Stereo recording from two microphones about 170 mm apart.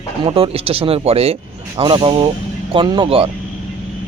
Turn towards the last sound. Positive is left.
turn(degrees=-30)  # may be behind; listen again after turning